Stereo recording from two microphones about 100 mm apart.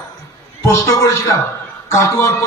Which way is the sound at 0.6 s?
35° left (ahead or behind).